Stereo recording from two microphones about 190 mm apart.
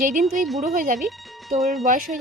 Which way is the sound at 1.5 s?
Centre (ahead or behind).